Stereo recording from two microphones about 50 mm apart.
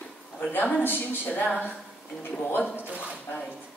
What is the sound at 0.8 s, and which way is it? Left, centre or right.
Speech, left.